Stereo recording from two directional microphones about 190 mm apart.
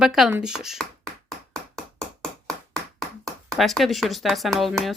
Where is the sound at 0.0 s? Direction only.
5° right (ahead or behind).